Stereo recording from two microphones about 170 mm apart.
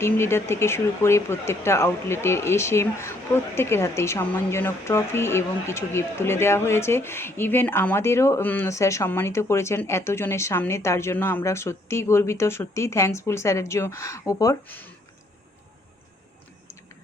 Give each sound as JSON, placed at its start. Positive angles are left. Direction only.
{"t": 0.0, "sound": "speech", "side_deg": 15}